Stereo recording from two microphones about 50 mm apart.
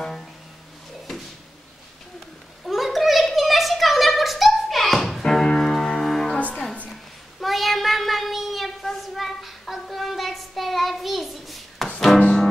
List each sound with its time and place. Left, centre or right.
0.0 s music: centre
2.6 s a sound: centre
6.9 s child singing: centre